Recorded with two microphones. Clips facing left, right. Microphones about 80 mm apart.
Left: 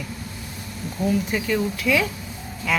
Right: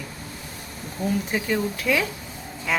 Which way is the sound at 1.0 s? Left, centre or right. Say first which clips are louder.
Left 2 dB; right.